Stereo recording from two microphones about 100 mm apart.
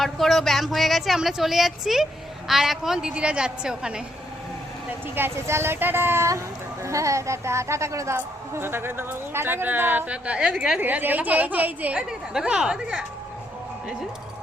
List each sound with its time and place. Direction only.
0.0 s a man's voice: centre (ahead or behind)
4.9 s a man's voice: 20° right (ahead or behind)